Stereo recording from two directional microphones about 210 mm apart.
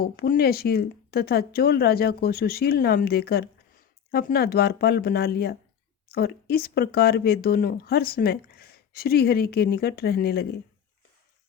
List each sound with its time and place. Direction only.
0.0 s speech: 45° left (ahead or behind)